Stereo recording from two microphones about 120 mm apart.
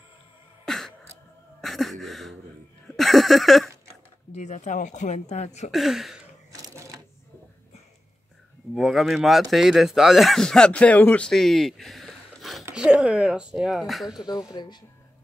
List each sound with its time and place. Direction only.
0.7 s cough: 5° left (ahead or behind)
1.6 s a sound: centre (ahead or behind)
4.3 s speech: 80° left
5.7 s speech: centre (ahead or behind)
6.5 s sewing machine: 25° right (ahead or behind)
8.7 s speech: centre (ahead or behind)
14.1 s speech: 35° left (ahead or behind)